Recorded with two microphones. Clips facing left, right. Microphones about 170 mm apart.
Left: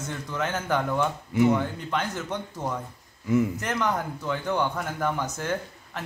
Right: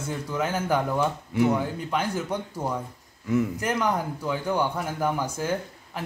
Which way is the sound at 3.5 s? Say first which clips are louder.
Right 2 dB; 10° right (ahead or behind).